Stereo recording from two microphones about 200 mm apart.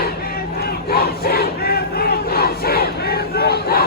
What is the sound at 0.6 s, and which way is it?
Battle cry, 50° left (ahead or behind).